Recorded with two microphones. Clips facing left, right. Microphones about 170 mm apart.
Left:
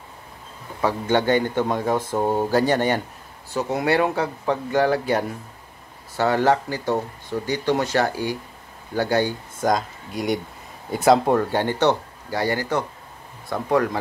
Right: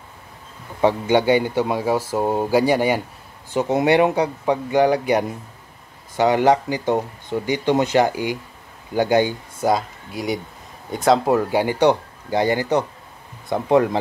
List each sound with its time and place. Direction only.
0.7 s speech: 15° right (ahead or behind)
3.5 s speech: 20° right (ahead or behind)